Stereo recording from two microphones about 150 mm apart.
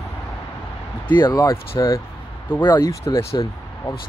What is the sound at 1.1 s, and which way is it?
Speech, 30° left (ahead or behind).